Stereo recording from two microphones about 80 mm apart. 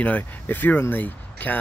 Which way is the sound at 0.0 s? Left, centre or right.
Left.